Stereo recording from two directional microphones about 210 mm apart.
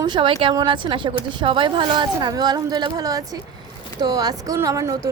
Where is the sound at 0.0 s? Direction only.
20° right (ahead or behind).